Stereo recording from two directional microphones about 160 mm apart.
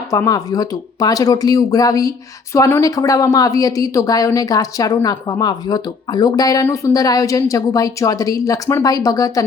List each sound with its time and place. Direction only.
0.1 s speech: 20° left (ahead or behind)